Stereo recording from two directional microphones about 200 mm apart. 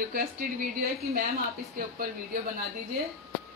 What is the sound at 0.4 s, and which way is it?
Speech, 45° right (ahead or behind).